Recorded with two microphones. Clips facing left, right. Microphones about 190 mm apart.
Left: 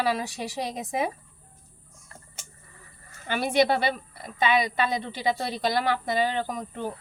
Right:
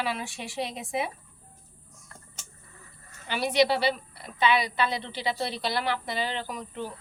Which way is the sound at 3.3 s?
50° left (ahead or behind).